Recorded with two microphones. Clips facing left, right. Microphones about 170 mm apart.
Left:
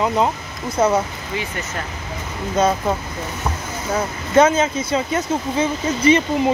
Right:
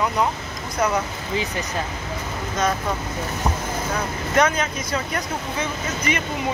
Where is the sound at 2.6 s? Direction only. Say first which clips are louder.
Left 6 dB; 30° left (ahead or behind).